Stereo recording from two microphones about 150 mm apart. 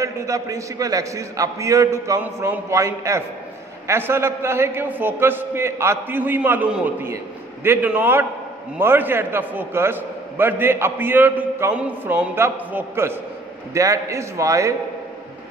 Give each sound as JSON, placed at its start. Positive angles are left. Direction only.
{"t": 0.0, "sound": "a man's voice", "side_deg": -20}